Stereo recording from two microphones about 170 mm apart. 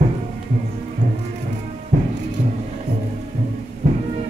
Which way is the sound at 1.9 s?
50° right (ahead or behind).